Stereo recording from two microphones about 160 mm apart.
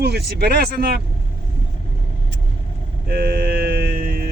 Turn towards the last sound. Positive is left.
turn(degrees=-75)  # may be behind; listen again after turning